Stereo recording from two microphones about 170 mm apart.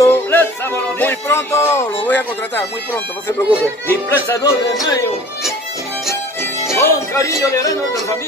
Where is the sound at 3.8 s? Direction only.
15° left (ahead or behind).